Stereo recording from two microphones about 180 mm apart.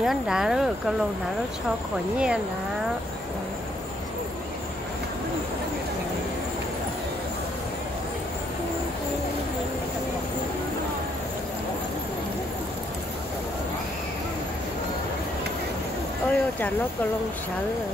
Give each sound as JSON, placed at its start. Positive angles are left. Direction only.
{"t": 0.0, "sound": "speech", "side_deg": 0}
{"t": 2.1, "sound": "speech", "side_deg": -5}
{"t": 16.3, "sound": "speech", "side_deg": 10}